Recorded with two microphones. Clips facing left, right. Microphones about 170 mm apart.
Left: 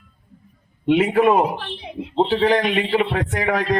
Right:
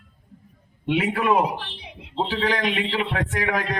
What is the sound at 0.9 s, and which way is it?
A man's voice, 45° left (ahead or behind).